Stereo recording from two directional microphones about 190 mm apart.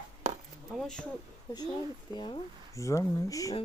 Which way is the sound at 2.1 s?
20° left (ahead or behind).